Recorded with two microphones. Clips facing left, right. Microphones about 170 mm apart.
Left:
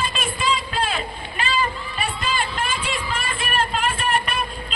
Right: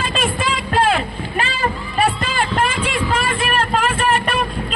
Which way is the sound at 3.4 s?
90° right.